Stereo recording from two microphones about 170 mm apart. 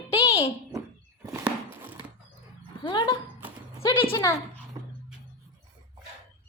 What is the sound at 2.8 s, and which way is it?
Speech, 25° left (ahead or behind).